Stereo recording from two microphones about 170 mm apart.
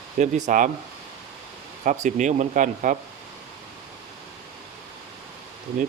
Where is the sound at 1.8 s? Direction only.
45° right (ahead or behind).